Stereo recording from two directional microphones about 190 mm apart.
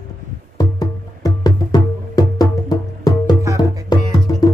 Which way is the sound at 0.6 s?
20° left (ahead or behind).